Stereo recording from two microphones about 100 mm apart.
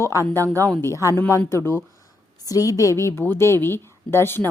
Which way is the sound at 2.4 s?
35° left (ahead or behind).